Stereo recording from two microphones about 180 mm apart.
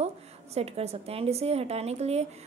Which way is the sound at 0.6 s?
35° right (ahead or behind).